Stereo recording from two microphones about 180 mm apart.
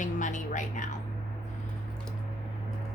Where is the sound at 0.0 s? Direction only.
45° left (ahead or behind).